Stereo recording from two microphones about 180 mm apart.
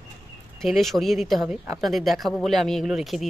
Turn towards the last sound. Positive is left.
turn(degrees=0)  # may be behind; listen again after turning